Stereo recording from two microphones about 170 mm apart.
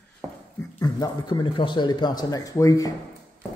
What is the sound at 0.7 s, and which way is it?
A man's voice, 20° left (ahead or behind).